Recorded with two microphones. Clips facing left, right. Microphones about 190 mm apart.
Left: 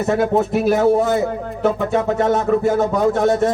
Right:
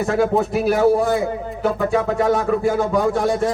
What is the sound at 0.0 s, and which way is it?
Speech, centre (ahead or behind).